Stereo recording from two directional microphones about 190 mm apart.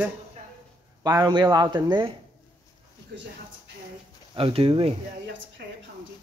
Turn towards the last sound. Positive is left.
turn(degrees=-30)  # may be behind; listen again after turning